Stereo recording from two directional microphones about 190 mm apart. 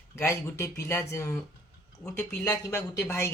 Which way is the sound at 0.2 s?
15° left (ahead or behind).